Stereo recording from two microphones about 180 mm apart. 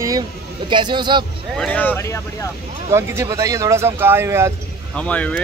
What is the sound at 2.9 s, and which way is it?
A man's voice, 15° right (ahead or behind).